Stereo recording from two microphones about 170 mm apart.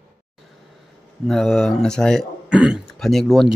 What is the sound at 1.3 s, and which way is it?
Speech, centre (ahead or behind).